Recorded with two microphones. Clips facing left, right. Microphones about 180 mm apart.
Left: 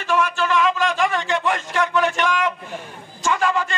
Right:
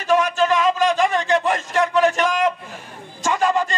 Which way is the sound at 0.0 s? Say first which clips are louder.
Right 3 dB; 40° right (ahead or behind).